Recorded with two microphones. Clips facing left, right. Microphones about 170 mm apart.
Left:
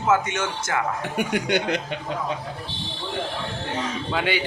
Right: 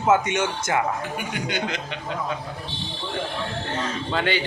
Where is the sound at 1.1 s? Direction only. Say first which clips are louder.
Left 5 dB; 65° left (ahead or behind).